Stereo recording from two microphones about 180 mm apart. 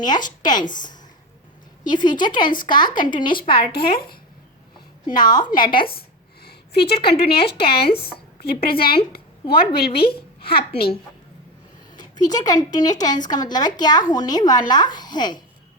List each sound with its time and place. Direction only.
0.0 s a woman's voice: 25° left (ahead or behind)
3.7 s speech: 55° left (ahead or behind)
5.0 s a woman's voice: 25° left (ahead or behind)
6.4 s a sound: 60° left (ahead or behind)
6.9 s speech: 30° left (ahead or behind)
7.3 s speech: 60° left (ahead or behind)
7.9 s speech: 30° left (ahead or behind)
8.4 s speech: 60° left (ahead or behind)
9.9 s speech: 30° left (ahead or behind)
11.9 s a woman's voice: 20° left (ahead or behind)